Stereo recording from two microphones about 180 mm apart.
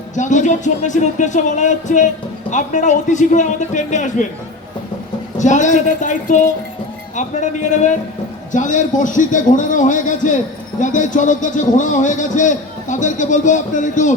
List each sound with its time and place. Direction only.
0.2 s a man's voice: 45° left (ahead or behind)
5.4 s a man's voice: 40° left (ahead or behind)